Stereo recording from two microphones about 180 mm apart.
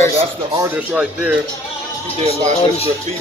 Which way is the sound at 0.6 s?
5° right (ahead or behind).